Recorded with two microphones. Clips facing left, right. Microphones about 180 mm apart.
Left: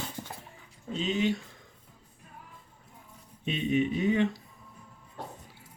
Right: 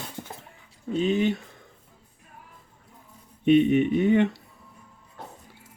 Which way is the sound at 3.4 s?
60° right (ahead or behind).